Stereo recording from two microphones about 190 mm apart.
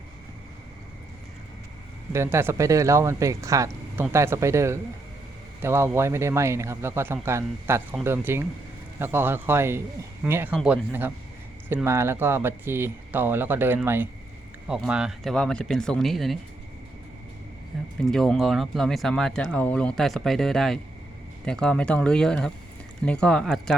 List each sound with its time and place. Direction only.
2.1 s speech: 15° right (ahead or behind)
18.0 s speech: 5° left (ahead or behind)